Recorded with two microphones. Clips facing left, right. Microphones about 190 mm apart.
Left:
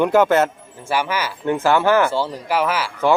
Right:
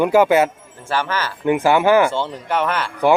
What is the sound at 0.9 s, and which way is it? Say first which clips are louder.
Speech: even; 10° left (ahead or behind).